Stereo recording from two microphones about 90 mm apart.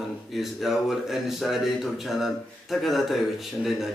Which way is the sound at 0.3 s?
Centre (ahead or behind).